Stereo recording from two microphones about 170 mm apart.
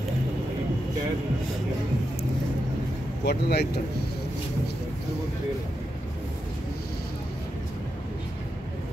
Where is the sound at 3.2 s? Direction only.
75° left (ahead or behind).